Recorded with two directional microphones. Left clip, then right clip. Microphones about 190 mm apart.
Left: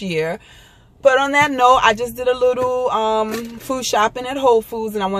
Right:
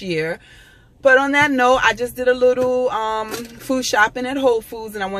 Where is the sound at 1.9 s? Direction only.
35° right (ahead or behind).